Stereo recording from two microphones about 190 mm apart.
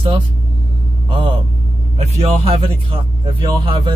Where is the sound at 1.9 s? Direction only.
35° right (ahead or behind).